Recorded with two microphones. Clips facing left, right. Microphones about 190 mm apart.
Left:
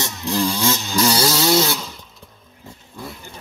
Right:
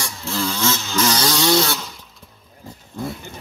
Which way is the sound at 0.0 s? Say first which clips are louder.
Left 4 dB; 15° left (ahead or behind).